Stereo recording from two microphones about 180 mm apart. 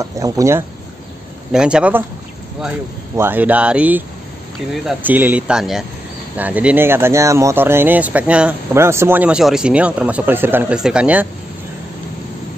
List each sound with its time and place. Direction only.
0.0 s speech: 15° right (ahead or behind)
1.5 s speech: 5° right (ahead or behind)
3.2 s speech: 10° right (ahead or behind)